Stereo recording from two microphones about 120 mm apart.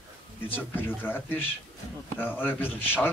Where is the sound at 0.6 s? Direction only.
15° left (ahead or behind).